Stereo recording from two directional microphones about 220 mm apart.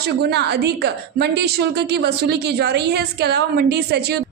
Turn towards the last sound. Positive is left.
turn(degrees=-45)  # may be behind; listen again after turning